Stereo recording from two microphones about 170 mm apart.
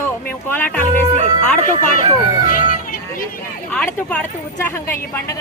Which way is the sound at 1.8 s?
50° left (ahead or behind).